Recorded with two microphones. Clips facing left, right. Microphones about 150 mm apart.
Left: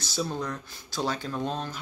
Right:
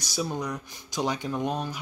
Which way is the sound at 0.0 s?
15° right (ahead or behind).